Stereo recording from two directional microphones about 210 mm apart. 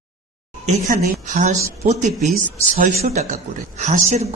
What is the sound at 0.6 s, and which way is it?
Speech, 35° right (ahead or behind).